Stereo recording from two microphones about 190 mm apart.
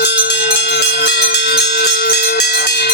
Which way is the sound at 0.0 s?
60° left (ahead or behind).